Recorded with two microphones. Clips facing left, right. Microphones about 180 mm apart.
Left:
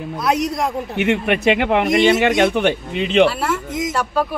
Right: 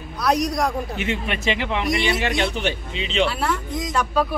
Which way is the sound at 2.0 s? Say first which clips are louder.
Left 9 dB; 20° left (ahead or behind).